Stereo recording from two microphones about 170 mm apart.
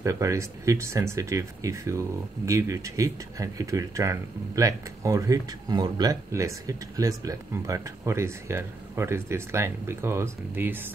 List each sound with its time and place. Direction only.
0.0 s speech: 15° right (ahead or behind)